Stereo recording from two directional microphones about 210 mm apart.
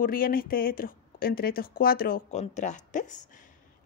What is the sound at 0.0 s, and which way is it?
Speech, 45° left (ahead or behind).